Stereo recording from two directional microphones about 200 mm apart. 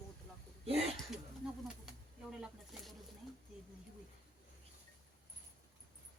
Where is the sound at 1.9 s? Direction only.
5° right (ahead or behind).